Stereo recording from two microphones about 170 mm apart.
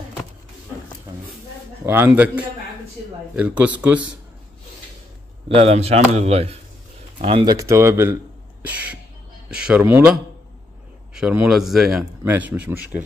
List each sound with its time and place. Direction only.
1.9 s speech: 10° right (ahead or behind)
5.5 s speech: 35° right (ahead or behind); by 10.1 s 10° right (ahead or behind)
11.1 s speech: 5° right (ahead or behind)